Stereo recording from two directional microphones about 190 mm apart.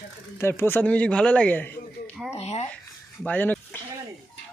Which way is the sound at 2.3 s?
35° left (ahead or behind).